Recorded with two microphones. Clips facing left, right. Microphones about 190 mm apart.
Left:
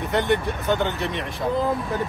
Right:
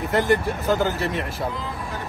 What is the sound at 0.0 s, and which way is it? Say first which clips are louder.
Speech: right 1 dB; centre (ahead or behind).